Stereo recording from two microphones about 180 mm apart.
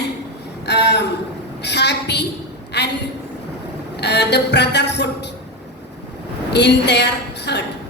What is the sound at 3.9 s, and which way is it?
Speech, 70° left (ahead or behind).